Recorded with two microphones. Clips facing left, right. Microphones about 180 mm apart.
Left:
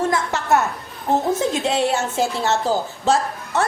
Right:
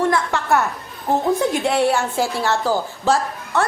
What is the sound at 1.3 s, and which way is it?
A woman's voice, 20° left (ahead or behind).